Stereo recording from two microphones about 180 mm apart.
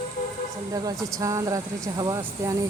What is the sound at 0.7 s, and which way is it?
Speech, 20° right (ahead or behind).